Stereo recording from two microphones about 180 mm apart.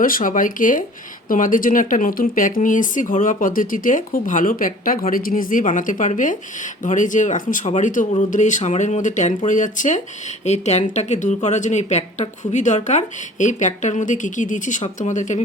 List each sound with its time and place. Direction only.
0.0 s a woman's voice: 50° left (ahead or behind)